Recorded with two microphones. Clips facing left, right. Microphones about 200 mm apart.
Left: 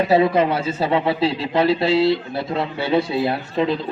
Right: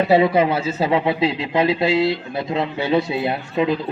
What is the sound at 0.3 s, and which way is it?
A man's voice, 10° right (ahead or behind).